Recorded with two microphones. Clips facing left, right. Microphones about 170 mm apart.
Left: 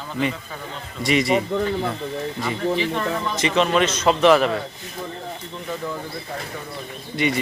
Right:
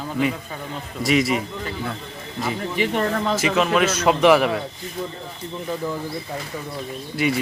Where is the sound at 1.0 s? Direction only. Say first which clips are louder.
Left 1 dB; centre (ahead or behind).